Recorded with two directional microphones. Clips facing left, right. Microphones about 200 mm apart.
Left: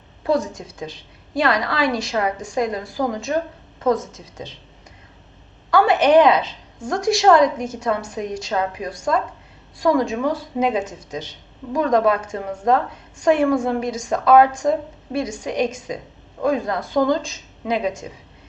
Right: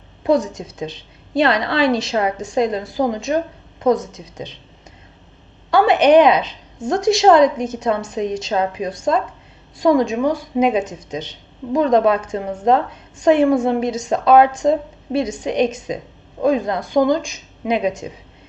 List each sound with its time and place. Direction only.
0.2 s speech: 20° right (ahead or behind)
5.7 s speech: 20° right (ahead or behind)